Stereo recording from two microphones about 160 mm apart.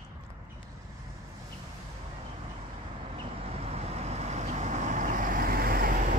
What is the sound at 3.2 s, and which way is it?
Vehicle, 40° right (ahead or behind).